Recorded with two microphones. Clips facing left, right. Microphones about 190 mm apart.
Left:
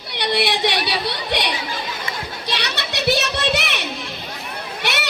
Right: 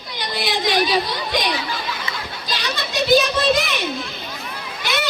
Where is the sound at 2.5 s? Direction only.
75° left (ahead or behind).